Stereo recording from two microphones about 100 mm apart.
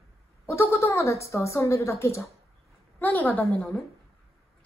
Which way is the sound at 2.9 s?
20° left (ahead or behind).